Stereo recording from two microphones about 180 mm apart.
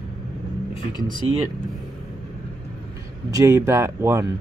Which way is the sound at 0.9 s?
25° left (ahead or behind).